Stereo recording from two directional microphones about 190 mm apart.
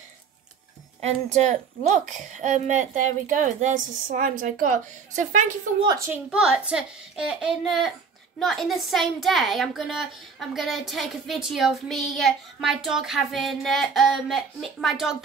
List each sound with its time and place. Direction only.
1.0 s a woman's voice: 35° right (ahead or behind)
5.9 s a woman's voice: 15° right (ahead or behind)